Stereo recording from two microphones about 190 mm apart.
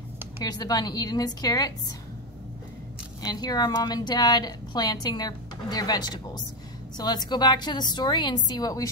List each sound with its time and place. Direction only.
0.4 s a woman's voice: 20° left (ahead or behind)
3.2 s a woman's voice: 20° left (ahead or behind)